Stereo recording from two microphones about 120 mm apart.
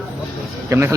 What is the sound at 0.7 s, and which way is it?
Speech, 25° right (ahead or behind).